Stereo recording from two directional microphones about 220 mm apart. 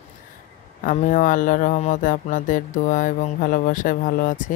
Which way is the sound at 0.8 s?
35° left (ahead or behind).